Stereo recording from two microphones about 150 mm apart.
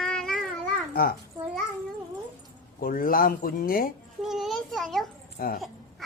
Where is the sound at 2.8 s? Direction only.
70° left (ahead or behind).